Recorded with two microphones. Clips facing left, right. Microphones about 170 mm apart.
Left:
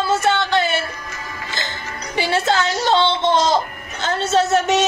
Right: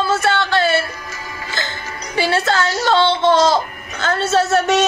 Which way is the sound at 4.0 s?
20° left (ahead or behind).